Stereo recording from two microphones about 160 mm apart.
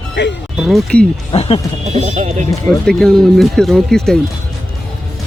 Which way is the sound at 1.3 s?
35° left (ahead or behind).